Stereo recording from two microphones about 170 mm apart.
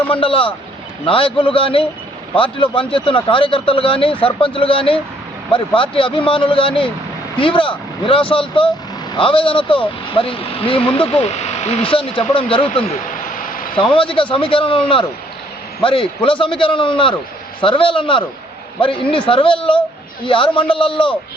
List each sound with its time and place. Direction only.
0.1 s speech: 30° left (ahead or behind)
13.3 s a sound: 55° left (ahead or behind)
13.7 s a man's voice: 30° left (ahead or behind)